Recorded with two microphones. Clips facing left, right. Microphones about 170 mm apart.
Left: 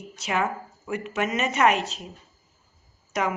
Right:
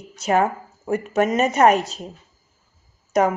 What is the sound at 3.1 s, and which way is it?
Speech, 40° right (ahead or behind).